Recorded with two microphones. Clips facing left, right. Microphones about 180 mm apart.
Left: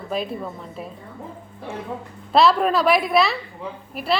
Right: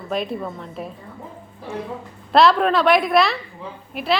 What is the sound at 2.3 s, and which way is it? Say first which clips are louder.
A woman's voice: right 1 dB; centre (ahead or behind).